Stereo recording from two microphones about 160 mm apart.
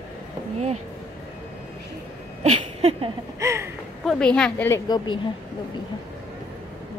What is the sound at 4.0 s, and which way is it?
A woman's voice, 5° left (ahead or behind).